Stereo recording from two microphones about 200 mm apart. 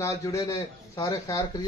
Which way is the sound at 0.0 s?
15° left (ahead or behind).